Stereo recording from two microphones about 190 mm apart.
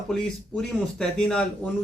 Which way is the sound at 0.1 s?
Centre (ahead or behind).